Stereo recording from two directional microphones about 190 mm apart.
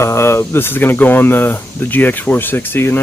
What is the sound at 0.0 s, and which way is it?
Speech, 15° left (ahead or behind).